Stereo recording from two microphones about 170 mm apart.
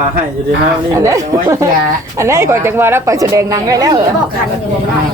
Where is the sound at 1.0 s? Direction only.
20° right (ahead or behind).